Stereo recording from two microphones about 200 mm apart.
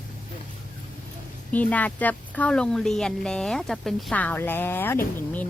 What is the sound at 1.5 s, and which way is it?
Speech, 10° left (ahead or behind).